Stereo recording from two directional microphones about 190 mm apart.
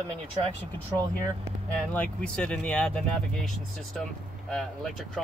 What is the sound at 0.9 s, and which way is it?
Speech, 15° right (ahead or behind).